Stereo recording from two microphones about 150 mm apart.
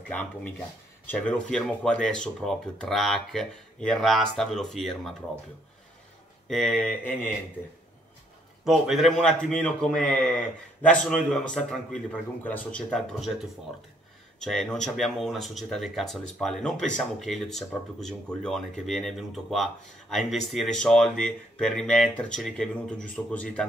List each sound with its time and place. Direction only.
1.0 s speech: 10° left (ahead or behind)
6.5 s speech: 5° left (ahead or behind)
8.6 s speech: centre (ahead or behind)
14.4 s speech: 5° left (ahead or behind)